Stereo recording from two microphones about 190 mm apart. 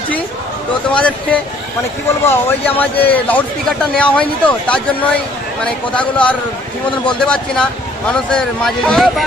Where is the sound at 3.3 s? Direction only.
5° left (ahead or behind).